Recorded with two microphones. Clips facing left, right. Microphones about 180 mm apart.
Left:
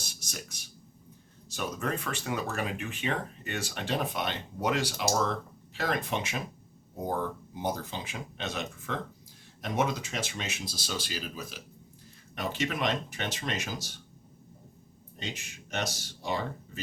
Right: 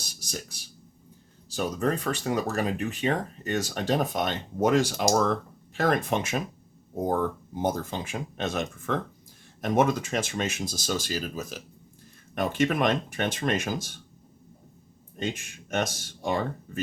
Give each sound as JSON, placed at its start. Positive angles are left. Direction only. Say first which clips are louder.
{"t": 0.2, "sound": "speech", "louder": "right 8 dB", "side_deg": -35}
{"t": 15.2, "sound": "speech", "louder": "right 8 dB", "side_deg": -50}